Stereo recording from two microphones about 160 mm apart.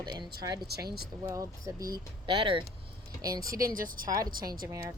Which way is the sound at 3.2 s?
20° right (ahead or behind).